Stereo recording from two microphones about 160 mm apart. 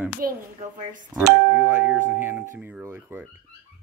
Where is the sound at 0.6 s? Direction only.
50° right (ahead or behind).